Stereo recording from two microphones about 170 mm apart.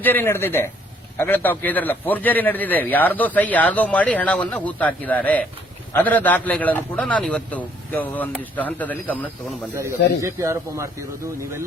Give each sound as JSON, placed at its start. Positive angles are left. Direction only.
{"t": 0.0, "sound": "a man's voice", "side_deg": 10}
{"t": 10.2, "sound": "a man's voice", "side_deg": -15}